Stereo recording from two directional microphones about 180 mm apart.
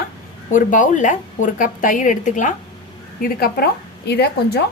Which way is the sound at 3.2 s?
55° left (ahead or behind).